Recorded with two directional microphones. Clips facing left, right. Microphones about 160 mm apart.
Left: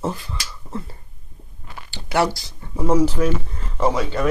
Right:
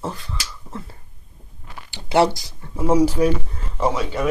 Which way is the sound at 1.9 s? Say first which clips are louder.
Right 3 dB; 25° right (ahead or behind).